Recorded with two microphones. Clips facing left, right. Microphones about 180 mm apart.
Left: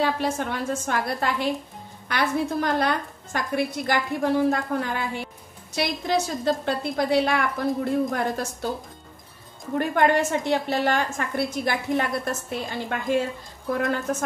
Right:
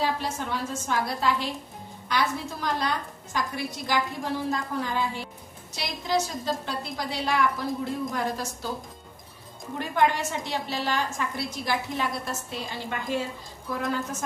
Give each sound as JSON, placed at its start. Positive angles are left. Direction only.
{"t": 0.0, "sound": "a woman's voice", "side_deg": 60}
{"t": 9.8, "sound": "a woman's voice", "side_deg": 55}